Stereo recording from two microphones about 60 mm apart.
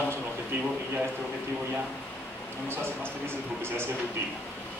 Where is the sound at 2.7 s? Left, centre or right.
Right.